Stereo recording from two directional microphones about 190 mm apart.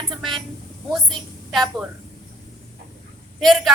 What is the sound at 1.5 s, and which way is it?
Speech, centre (ahead or behind).